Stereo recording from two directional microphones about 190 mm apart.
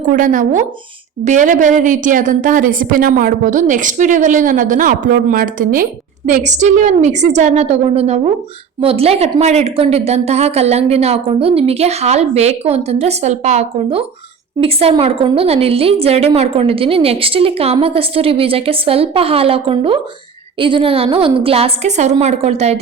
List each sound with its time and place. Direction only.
0.1 s a woman's voice: 45° right (ahead or behind)